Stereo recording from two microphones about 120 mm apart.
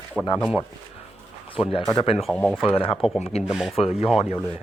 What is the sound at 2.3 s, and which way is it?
Speech, 5° left (ahead or behind).